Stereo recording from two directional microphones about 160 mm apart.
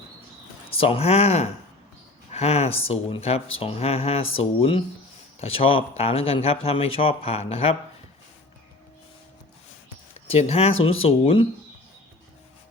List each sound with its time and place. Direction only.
0.7 s speech: 35° left (ahead or behind)
10.2 s speech: 40° left (ahead or behind)